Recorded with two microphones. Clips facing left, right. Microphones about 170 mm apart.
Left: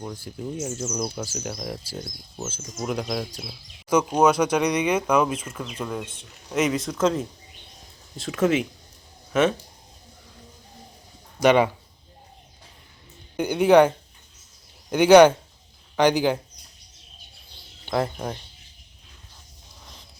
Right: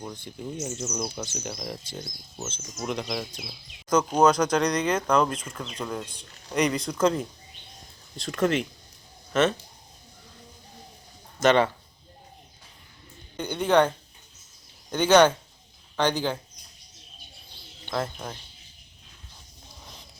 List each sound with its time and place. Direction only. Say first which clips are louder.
0.0 s speech: left 3 dB; centre (ahead or behind)
11.3 s speech: left 3 dB; 10° left (ahead or behind)
13.3 s speech: left 6 dB; 10° left (ahead or behind)
17.9 s speech: left 5 dB; 15° left (ahead or behind)